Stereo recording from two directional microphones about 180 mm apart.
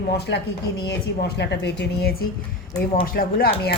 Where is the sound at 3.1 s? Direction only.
55° left (ahead or behind).